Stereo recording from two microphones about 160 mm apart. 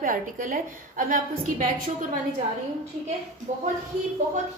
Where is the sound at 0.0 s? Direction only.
60° right (ahead or behind).